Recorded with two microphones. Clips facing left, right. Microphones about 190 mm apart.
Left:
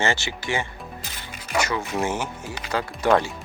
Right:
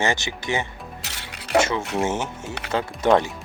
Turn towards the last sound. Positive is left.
turn(degrees=-20)  # may be behind; listen again after turning